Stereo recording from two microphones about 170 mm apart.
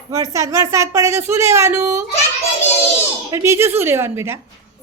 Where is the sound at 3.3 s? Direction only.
15° right (ahead or behind).